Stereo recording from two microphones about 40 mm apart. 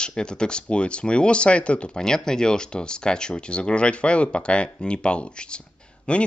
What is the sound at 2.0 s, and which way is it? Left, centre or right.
Speech, centre.